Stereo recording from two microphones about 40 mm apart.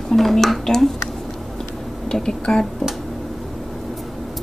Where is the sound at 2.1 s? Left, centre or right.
Centre.